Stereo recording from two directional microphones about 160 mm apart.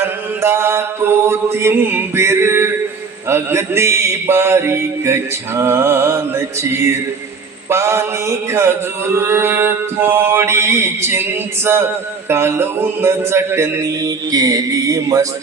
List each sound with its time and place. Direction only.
0.0 s mantra: 15° right (ahead or behind)